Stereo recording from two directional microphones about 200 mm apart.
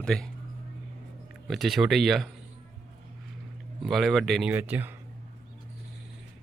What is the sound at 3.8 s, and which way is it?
Speech, centre (ahead or behind).